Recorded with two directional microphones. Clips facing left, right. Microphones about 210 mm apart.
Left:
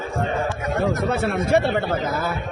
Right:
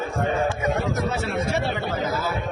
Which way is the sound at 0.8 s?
55° left (ahead or behind).